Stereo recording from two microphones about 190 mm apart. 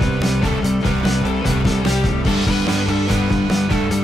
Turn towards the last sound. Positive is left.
turn(degrees=0)  # may be behind; listen again after turning